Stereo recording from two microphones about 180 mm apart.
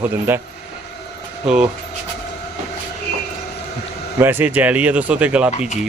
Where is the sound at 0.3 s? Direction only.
10° right (ahead or behind).